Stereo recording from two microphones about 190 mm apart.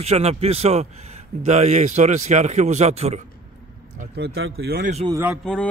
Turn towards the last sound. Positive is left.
turn(degrees=5)  # may be behind; listen again after turning